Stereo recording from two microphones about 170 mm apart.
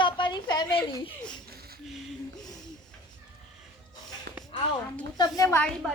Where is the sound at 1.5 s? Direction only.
65° right (ahead or behind).